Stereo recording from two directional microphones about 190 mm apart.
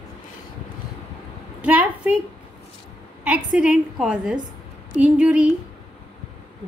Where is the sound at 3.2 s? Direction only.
5° right (ahead or behind).